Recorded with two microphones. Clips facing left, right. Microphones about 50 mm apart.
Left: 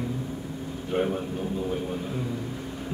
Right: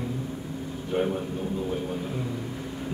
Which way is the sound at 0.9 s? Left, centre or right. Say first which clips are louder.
Even; centre.